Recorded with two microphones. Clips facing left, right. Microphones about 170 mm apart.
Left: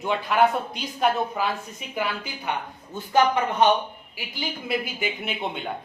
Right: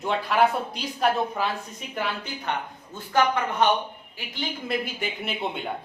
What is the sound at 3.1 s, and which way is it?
Speech, 15° left (ahead or behind).